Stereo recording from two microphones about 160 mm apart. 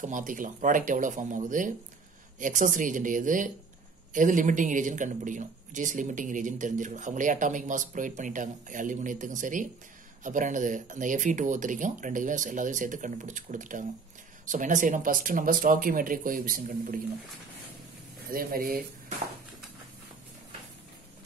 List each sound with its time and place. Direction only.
0.0 s a man's voice: 55° right (ahead or behind)
18.3 s speech: 65° right (ahead or behind)